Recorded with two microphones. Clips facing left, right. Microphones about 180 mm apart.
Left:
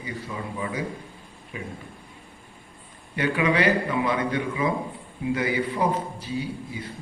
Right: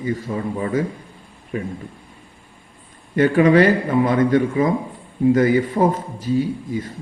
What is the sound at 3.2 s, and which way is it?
A man's voice, 45° right (ahead or behind).